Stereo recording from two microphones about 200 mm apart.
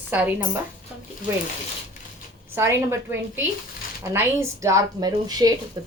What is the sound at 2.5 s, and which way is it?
Speech, 10° right (ahead or behind).